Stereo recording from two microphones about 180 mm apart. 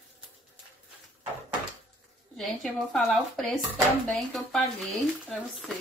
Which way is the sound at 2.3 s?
Centre (ahead or behind).